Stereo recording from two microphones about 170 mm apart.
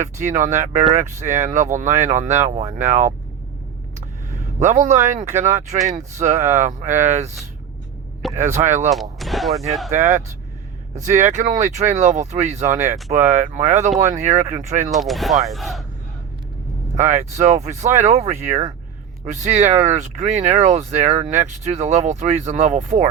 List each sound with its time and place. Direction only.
0.0 s speech: 45° right (ahead or behind)
4.6 s speech: 45° right (ahead or behind)
8.4 s speech: 45° right (ahead or behind)
8.9 s speech: centre (ahead or behind)
9.9 s speech: 45° right (ahead or behind)
14.9 s speech: centre (ahead or behind)
16.9 s speech: 45° right (ahead or behind)